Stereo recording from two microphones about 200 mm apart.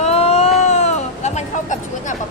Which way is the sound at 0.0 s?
30° left (ahead or behind).